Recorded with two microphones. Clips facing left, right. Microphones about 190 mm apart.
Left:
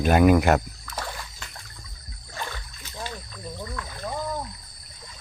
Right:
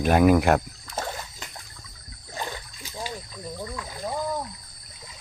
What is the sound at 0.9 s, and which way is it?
Splash, 25° right (ahead or behind).